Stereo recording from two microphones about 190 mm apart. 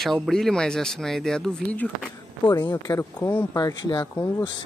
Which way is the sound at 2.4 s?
20° left (ahead or behind).